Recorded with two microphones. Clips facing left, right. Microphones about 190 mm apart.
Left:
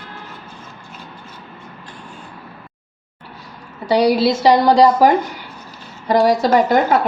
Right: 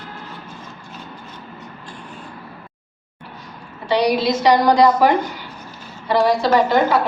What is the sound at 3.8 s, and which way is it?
A woman's voice, 35° left (ahead or behind).